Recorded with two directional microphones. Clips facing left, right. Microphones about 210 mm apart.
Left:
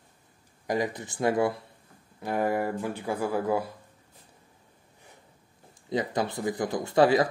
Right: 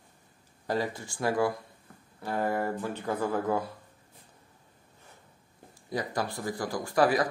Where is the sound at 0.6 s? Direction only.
15° left (ahead or behind).